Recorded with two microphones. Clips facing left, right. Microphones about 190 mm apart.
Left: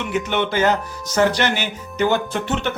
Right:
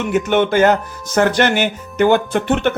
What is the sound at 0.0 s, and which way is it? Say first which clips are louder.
Speech: right 6 dB; 45° right (ahead or behind).